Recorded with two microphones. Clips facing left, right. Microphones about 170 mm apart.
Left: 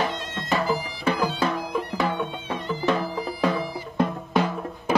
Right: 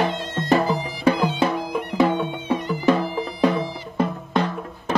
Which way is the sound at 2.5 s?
10° right (ahead or behind).